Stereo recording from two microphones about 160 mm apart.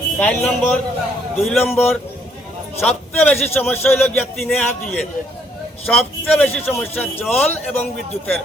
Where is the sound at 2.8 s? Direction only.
5° left (ahead or behind).